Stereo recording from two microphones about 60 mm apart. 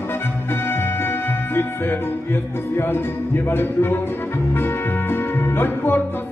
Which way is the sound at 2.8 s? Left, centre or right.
Left.